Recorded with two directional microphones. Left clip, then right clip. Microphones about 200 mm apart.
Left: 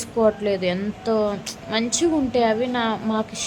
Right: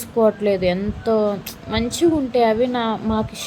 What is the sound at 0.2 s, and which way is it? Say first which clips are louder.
Speech: right 3 dB; 15° right (ahead or behind).